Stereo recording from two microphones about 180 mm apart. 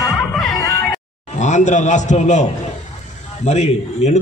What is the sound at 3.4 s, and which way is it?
Speech, 40° left (ahead or behind).